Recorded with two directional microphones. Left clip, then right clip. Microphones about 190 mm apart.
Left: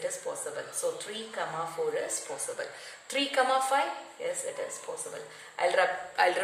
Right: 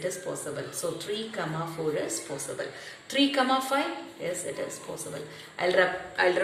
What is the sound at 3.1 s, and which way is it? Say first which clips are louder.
Speech: right 2 dB; 50° left (ahead or behind).